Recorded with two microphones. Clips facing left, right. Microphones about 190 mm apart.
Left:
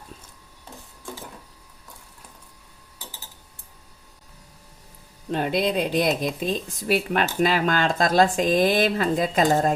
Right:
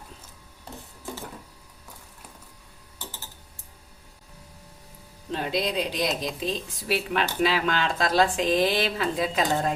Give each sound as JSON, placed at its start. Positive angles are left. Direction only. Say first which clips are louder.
{"t": 5.3, "sound": "speech", "louder": "left 4 dB", "side_deg": 55}